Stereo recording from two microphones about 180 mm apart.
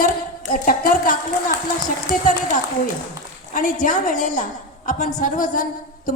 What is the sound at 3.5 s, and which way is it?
A woman's voice, 45° left (ahead or behind).